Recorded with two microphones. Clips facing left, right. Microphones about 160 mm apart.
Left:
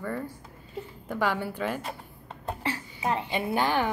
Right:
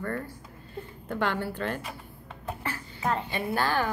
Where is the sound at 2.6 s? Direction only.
20° left (ahead or behind).